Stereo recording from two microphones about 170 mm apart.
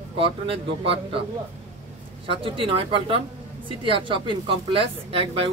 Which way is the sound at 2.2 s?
30° right (ahead or behind).